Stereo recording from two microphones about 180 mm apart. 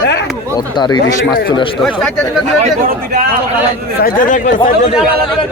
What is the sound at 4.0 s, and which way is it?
Speech, 45° left (ahead or behind).